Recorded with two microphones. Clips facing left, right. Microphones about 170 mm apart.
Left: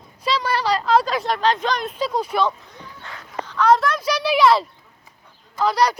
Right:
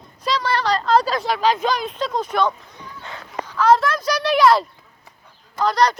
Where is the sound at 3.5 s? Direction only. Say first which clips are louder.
Right 1 dB; centre (ahead or behind).